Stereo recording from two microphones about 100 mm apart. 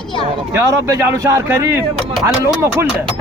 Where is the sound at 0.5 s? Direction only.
35° right (ahead or behind).